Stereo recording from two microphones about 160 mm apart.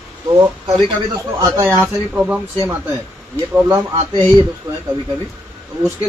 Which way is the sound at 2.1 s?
10° right (ahead or behind).